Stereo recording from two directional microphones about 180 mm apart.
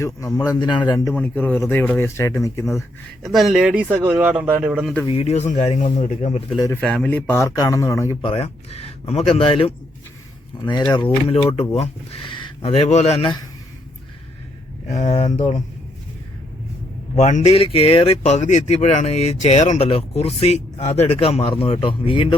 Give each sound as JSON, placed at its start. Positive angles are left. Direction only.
{"t": 0.3, "sound": "a man's voice", "side_deg": 20}
{"t": 1.1, "sound": "speech", "side_deg": 10}
{"t": 3.2, "sound": "speech", "side_deg": 0}
{"t": 5.0, "sound": "speech", "side_deg": 35}
{"t": 6.8, "sound": "speech", "side_deg": 5}
{"t": 8.2, "sound": "a man's voice", "side_deg": 30}
{"t": 14.8, "sound": "speech", "side_deg": 40}
{"t": 17.2, "sound": "speech", "side_deg": 40}